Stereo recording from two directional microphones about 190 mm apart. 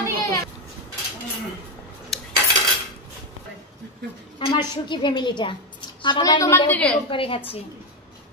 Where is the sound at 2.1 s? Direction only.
Centre (ahead or behind).